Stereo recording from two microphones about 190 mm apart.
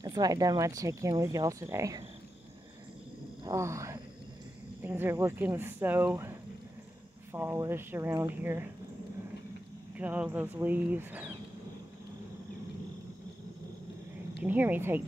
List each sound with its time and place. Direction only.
0.0 s speech: 20° right (ahead or behind)
3.4 s speech: 15° right (ahead or behind)
7.3 s speech: 10° right (ahead or behind)
9.9 s speech: 10° right (ahead or behind)
14.4 s speech: 10° right (ahead or behind)